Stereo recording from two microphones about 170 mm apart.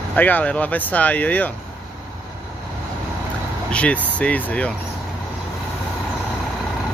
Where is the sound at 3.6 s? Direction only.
5° left (ahead or behind).